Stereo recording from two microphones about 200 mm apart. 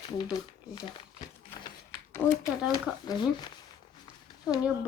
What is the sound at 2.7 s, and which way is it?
Speech, 20° left (ahead or behind).